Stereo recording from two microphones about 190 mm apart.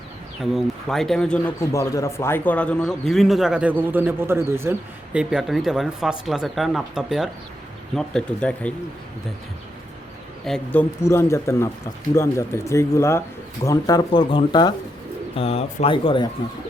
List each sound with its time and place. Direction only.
0.5 s speech: centre (ahead or behind)
1.7 s speech: 15° left (ahead or behind)
10.4 s speech: 5° left (ahead or behind); by 16.3 s 25° left (ahead or behind)